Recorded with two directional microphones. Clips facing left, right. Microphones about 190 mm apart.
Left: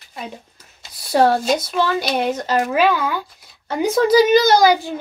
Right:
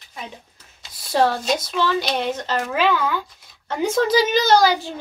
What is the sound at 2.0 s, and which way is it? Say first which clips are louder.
A child's voice: left 3 dB; 10° left (ahead or behind).